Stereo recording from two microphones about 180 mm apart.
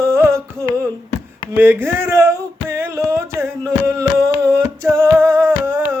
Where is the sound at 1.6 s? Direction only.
10° right (ahead or behind).